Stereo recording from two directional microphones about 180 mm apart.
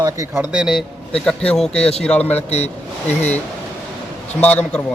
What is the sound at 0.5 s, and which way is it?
A man's voice, centre (ahead or behind).